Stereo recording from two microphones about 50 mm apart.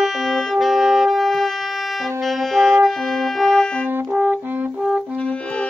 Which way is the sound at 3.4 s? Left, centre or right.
Centre.